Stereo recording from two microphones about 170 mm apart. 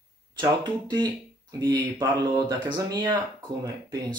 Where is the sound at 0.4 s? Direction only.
25° right (ahead or behind).